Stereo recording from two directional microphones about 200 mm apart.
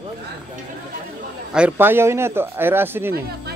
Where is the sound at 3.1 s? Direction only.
55° right (ahead or behind).